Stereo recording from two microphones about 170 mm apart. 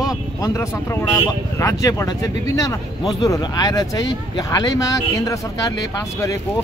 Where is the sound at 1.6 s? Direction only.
20° left (ahead or behind).